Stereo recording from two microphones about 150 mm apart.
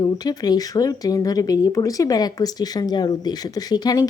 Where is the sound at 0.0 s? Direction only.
25° left (ahead or behind).